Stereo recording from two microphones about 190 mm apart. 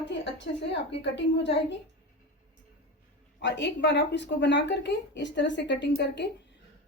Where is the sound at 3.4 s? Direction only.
70° left (ahead or behind).